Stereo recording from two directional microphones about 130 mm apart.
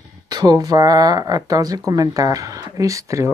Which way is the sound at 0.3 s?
30° right (ahead or behind).